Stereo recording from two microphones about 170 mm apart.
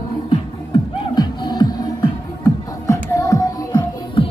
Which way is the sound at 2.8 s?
20° left (ahead or behind).